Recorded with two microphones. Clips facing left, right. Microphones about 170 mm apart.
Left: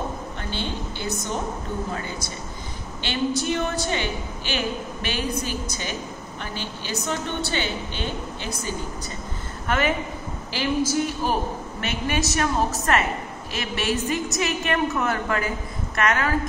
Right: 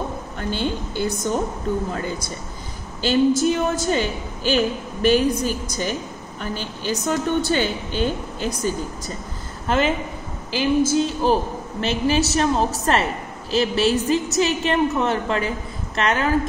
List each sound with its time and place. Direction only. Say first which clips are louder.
0.4 s a woman's voice: right 7 dB; 45° right (ahead or behind)
3.0 s a woman's voice: right 8 dB; 40° right (ahead or behind)
9.7 s a woman's voice: right 3 dB; 30° right (ahead or behind)